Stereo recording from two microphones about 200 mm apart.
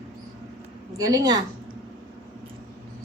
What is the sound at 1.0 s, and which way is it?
Speech, 20° right (ahead or behind).